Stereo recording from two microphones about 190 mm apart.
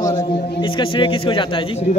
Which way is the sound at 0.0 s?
20° left (ahead or behind).